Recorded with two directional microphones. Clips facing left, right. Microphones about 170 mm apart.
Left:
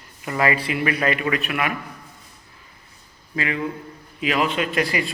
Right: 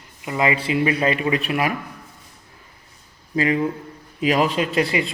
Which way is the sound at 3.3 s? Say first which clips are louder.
Right 5 dB; 35° right (ahead or behind).